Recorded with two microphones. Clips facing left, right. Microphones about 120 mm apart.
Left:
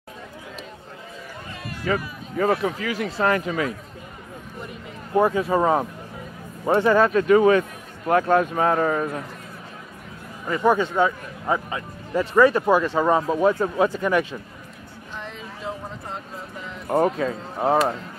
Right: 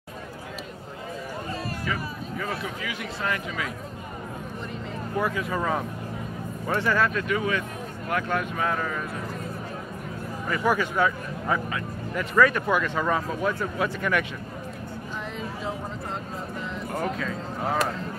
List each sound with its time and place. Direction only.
1.9 s speech: 45° left (ahead or behind)
5.1 s speech: 30° left (ahead or behind)
10.5 s speech: 25° left (ahead or behind)
16.9 s speech: 35° left (ahead or behind)